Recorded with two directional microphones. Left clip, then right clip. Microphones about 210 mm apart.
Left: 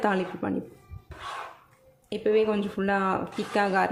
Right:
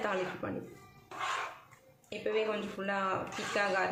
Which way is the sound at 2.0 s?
55° left (ahead or behind).